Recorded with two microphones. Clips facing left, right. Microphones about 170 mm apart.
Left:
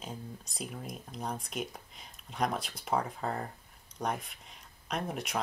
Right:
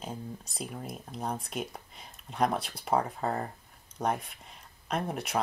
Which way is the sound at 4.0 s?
Centre (ahead or behind).